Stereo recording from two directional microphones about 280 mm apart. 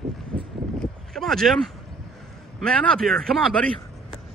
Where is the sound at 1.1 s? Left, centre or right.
Centre.